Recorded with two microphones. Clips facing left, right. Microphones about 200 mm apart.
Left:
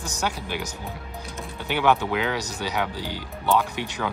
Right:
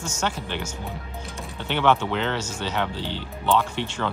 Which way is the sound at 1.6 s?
10° left (ahead or behind).